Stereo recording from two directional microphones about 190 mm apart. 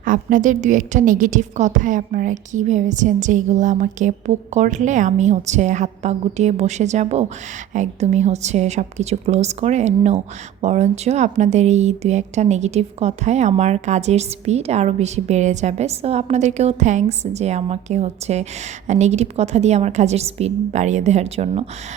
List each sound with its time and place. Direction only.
0.0 s speech: 45° right (ahead or behind)